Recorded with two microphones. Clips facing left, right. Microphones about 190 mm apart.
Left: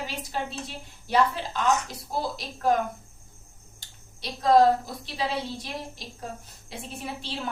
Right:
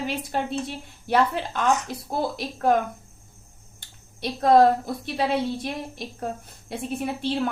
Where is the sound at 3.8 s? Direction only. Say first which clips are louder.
Right 8 dB; 55° right (ahead or behind).